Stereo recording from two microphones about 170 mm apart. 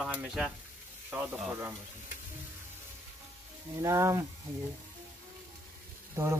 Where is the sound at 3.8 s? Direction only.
15° right (ahead or behind).